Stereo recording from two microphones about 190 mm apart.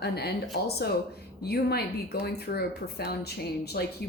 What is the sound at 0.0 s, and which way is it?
Speech, 60° left (ahead or behind).